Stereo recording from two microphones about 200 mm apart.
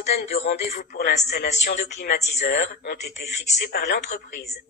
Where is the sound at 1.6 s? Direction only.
50° left (ahead or behind).